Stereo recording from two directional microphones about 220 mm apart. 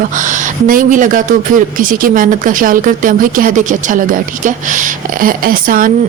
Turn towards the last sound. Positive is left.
turn(degrees=-40)  # may be behind; listen again after turning